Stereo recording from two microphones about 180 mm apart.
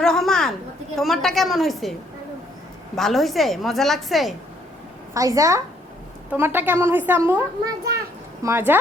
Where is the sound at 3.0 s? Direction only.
Centre (ahead or behind).